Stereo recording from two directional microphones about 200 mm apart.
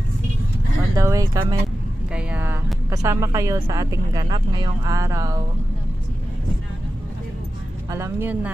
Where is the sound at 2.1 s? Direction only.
10° right (ahead or behind).